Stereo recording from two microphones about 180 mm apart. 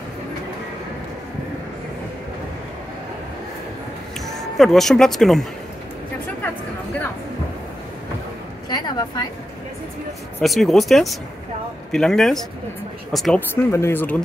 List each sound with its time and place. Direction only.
4.6 s speech: centre (ahead or behind)
8.6 s a sound: 25° left (ahead or behind)
10.4 s speech: centre (ahead or behind)
13.6 s speech: 15° left (ahead or behind)